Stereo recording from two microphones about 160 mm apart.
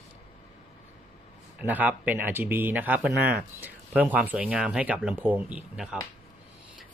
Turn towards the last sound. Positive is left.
turn(degrees=-5)  # may be behind; listen again after turning